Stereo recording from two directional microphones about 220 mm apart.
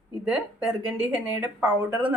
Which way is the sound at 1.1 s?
5° right (ahead or behind).